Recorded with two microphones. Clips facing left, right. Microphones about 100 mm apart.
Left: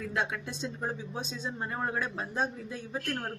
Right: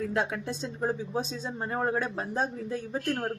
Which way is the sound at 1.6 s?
35° right (ahead or behind).